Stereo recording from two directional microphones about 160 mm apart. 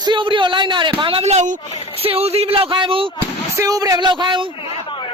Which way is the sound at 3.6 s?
20° right (ahead or behind).